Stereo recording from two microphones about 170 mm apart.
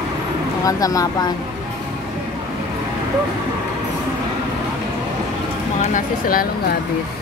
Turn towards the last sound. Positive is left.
turn(degrees=55)  # may be behind; listen again after turning